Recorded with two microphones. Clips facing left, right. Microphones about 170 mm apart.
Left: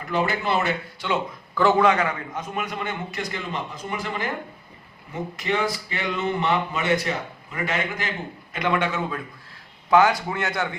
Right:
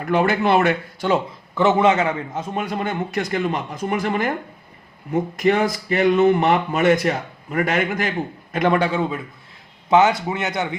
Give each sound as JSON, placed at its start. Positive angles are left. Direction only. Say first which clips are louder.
{"t": 0.0, "sound": "speech", "louder": "right 6 dB", "side_deg": -55}
{"t": 1.0, "sound": "speech", "louder": "right 6 dB", "side_deg": -45}
{"t": 1.5, "sound": "a man's voice", "louder": "right 2 dB", "side_deg": -20}
{"t": 3.2, "sound": "speech", "louder": "right 8 dB", "side_deg": -50}
{"t": 5.4, "sound": "a man's voice", "louder": "right 6 dB", "side_deg": -50}
{"t": 9.9, "sound": "a man's voice", "louder": "right 2 dB", "side_deg": -20}